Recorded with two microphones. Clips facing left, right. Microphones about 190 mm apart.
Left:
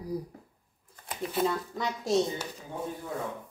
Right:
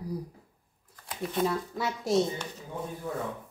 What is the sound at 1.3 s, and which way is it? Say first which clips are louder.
Speech: even; centre (ahead or behind).